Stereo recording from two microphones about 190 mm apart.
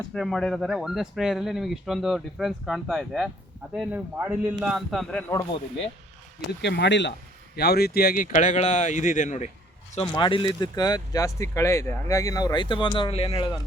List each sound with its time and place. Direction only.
0.1 s a man's voice: centre (ahead or behind)
5.3 s speech: 15° left (ahead or behind)
6.6 s speech: 65° left (ahead or behind); by 13.6 s 25° left (ahead or behind)